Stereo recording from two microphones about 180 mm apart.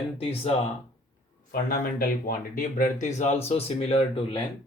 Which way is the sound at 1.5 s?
55° left (ahead or behind).